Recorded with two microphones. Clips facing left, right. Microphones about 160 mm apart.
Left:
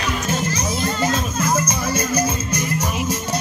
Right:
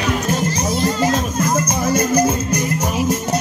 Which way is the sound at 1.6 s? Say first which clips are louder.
Right 4 dB; 55° right (ahead or behind).